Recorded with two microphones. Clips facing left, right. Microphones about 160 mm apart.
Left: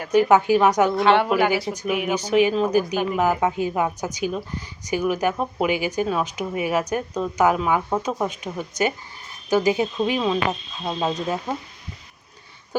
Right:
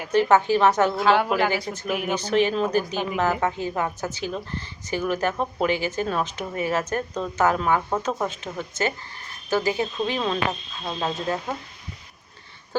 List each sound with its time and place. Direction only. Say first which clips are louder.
0.1 s a woman's voice: left 2 dB; 15° left (ahead or behind)
0.9 s a woman's voice: left 2 dB; centre (ahead or behind)